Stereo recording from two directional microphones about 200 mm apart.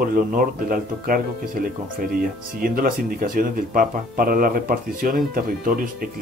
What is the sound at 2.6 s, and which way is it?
Speech, 45° right (ahead or behind).